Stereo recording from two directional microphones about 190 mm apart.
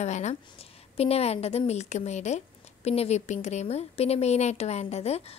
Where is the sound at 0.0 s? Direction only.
35° left (ahead or behind).